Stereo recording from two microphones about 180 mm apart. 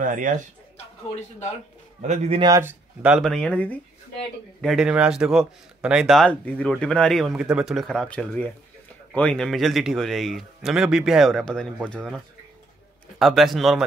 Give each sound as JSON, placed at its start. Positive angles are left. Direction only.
{"t": 0.0, "sound": "speech", "side_deg": -45}
{"t": 2.0, "sound": "a man's voice", "side_deg": -40}
{"t": 2.4, "sound": "a man's voice", "side_deg": -15}
{"t": 13.2, "sound": "a man's voice", "side_deg": 0}